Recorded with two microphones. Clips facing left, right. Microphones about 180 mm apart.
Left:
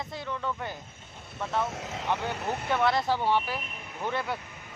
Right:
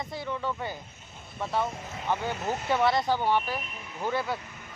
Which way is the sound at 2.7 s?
Centre (ahead or behind).